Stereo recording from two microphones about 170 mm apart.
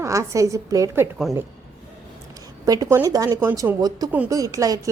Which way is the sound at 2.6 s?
20° right (ahead or behind).